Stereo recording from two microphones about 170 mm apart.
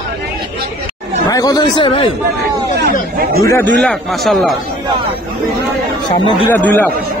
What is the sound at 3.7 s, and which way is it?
Speech, 5° left (ahead or behind).